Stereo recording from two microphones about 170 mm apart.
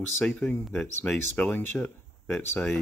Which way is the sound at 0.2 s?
10° left (ahead or behind).